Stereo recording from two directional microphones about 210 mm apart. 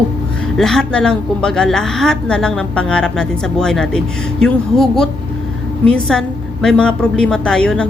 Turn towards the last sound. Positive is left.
turn(degrees=5)  # may be behind; listen again after turning